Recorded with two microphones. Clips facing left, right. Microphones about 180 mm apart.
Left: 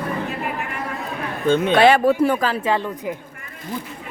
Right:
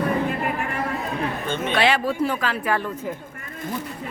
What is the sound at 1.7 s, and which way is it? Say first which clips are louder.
Speech: left 6 dB; 50° left (ahead or behind).